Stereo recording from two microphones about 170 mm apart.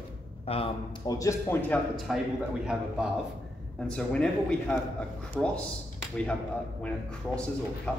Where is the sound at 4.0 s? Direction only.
5° left (ahead or behind).